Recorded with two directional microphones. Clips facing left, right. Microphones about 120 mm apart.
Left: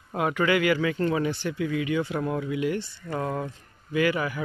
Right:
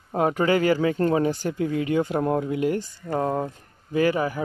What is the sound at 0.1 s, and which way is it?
Speech, 40° right (ahead or behind).